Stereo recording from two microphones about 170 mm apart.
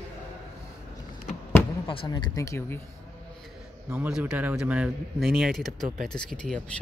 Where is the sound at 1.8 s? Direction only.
30° left (ahead or behind); by 2.8 s 15° left (ahead or behind).